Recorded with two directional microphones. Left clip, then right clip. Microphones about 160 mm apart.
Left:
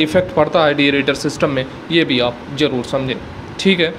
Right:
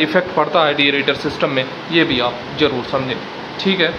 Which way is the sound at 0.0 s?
45° left (ahead or behind).